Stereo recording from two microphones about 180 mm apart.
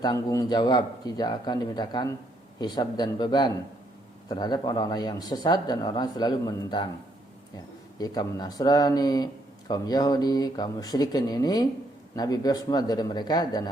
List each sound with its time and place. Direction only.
0.0 s speech: 20° left (ahead or behind)
7.9 s speech: 20° left (ahead or behind)